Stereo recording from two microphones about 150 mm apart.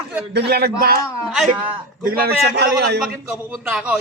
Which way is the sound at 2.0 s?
90° right.